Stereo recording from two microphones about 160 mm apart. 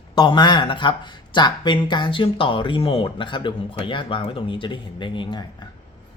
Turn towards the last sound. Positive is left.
turn(degrees=25)  # may be behind; listen again after turning